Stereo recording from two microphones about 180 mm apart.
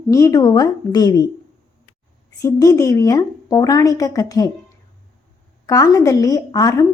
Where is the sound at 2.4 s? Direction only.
20° left (ahead or behind).